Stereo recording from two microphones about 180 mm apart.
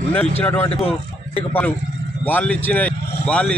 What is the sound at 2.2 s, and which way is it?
Speech, 10° left (ahead or behind).